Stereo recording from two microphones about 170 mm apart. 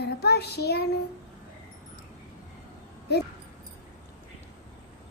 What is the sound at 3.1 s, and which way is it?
Child singing, 75° left (ahead or behind).